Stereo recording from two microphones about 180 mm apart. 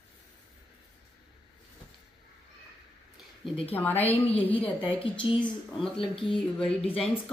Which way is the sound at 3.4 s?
30° left (ahead or behind).